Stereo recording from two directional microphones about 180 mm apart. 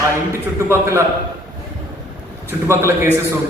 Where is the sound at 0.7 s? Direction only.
15° right (ahead or behind).